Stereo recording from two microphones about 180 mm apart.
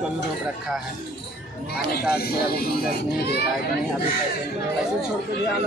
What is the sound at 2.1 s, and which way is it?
Speech, 60° left (ahead or behind).